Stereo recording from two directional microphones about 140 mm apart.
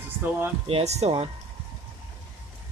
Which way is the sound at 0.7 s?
45° right (ahead or behind).